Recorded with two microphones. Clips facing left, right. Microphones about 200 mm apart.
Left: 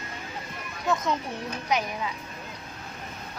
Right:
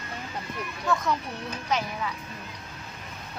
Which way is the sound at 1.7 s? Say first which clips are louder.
Left 1 dB; 15° left (ahead or behind).